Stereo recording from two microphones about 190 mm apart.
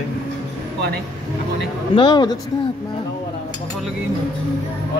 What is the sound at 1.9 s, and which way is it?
Speech, 25° left (ahead or behind).